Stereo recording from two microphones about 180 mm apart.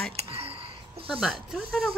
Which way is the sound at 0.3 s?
30° right (ahead or behind).